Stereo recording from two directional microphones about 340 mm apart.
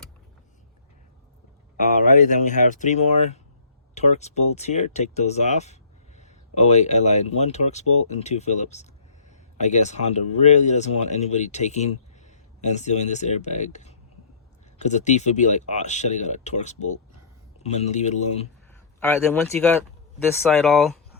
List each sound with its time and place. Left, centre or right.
1.8 s speech: left
18.9 s speech: centre